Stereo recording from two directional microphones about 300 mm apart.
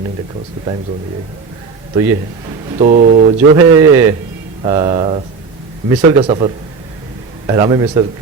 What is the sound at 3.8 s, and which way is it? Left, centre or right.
A man's voice, centre.